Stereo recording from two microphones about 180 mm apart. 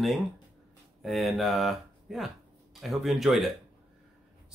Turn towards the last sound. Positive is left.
turn(degrees=0)  # may be behind; listen again after turning